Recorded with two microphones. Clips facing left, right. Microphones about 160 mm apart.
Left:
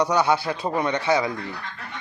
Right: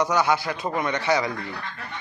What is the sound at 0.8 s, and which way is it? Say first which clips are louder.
Speech: left 1 dB; 15° left (ahead or behind).